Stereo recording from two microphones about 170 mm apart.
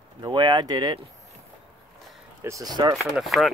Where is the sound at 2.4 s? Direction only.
20° right (ahead or behind).